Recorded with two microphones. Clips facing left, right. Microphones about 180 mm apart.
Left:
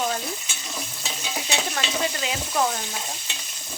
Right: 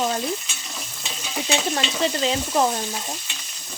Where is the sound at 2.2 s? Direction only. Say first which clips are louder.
Right 6 dB; 25° right (ahead or behind).